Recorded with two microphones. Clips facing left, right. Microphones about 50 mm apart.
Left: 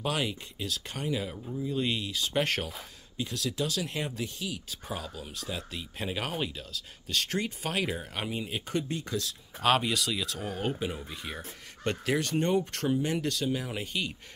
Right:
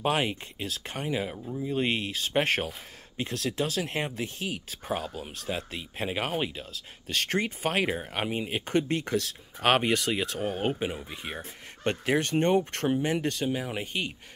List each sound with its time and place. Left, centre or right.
0.0 s speech: right; by 1.7 s centre
1.7 s speech: right
3.2 s speech: right
5.8 s speech: right
9.0 s speech: right; by 13.8 s centre